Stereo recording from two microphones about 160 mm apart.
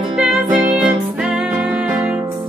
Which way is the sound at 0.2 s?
5° right (ahead or behind).